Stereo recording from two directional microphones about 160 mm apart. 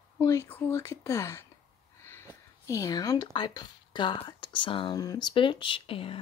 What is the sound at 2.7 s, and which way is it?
Speech, 20° left (ahead or behind).